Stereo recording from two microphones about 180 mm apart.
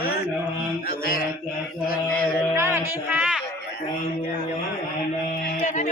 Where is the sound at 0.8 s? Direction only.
55° left (ahead or behind).